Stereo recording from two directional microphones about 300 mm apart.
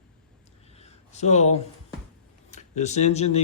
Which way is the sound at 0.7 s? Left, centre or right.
Left.